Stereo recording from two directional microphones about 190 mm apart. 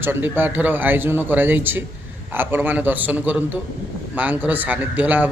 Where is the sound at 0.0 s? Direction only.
10° right (ahead or behind).